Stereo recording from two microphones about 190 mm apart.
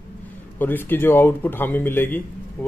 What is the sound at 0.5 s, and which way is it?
A man's voice, 10° left (ahead or behind).